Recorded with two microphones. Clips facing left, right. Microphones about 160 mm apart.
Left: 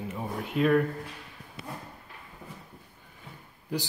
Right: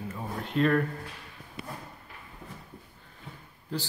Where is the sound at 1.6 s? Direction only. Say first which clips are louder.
Even; 55° right (ahead or behind).